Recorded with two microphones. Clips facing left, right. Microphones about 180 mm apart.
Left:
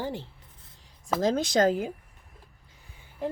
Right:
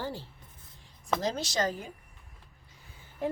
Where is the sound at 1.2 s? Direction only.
50° left (ahead or behind).